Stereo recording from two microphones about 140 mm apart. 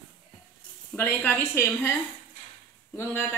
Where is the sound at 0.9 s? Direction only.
15° left (ahead or behind).